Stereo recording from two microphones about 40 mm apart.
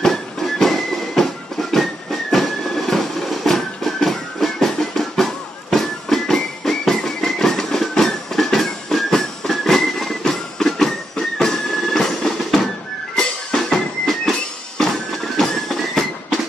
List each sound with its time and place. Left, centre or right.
0.0 s music: centre
2.3 s train: centre
13.1 s music: centre
15.3 s a sound: centre